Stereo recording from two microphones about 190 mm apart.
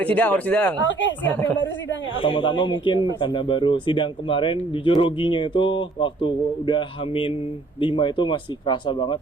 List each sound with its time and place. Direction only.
0.0 s speech: 10° left (ahead or behind)
0.9 s speech: 75° left (ahead or behind)
1.2 s speech: 10° left (ahead or behind)
2.2 s speech: 25° left (ahead or behind)